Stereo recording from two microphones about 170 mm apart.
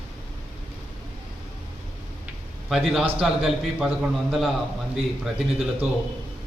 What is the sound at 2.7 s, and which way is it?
A man's voice, centre (ahead or behind).